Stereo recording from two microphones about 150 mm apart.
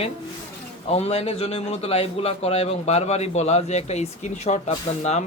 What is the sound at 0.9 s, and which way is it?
A man's voice, 45° left (ahead or behind).